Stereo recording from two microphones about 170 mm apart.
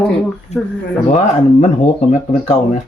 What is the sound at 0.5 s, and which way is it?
Speech, 40° left (ahead or behind).